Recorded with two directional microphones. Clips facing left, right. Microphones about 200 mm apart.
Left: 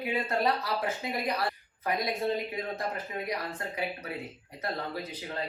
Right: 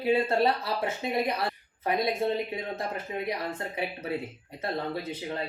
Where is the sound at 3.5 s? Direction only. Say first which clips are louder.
Right 2 dB; 25° right (ahead or behind).